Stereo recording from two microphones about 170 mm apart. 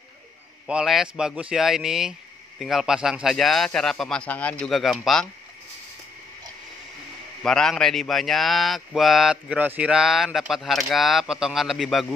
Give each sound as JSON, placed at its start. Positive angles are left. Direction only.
{"t": 0.7, "sound": "speech", "side_deg": -5}
{"t": 7.4, "sound": "speech", "side_deg": 5}